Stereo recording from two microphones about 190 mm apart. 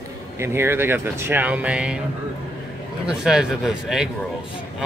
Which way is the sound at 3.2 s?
5° right (ahead or behind).